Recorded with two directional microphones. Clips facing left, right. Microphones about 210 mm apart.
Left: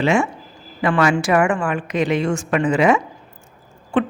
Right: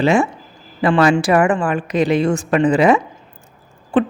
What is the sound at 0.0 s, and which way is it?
A woman's voice, 35° right (ahead or behind).